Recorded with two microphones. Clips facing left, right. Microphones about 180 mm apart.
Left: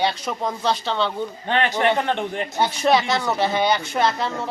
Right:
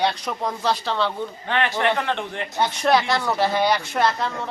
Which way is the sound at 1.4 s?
20° left (ahead or behind).